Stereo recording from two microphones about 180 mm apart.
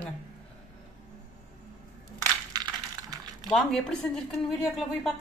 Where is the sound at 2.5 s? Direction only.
20° right (ahead or behind).